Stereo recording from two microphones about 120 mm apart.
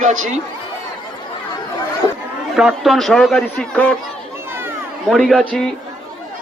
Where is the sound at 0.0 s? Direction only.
90° right.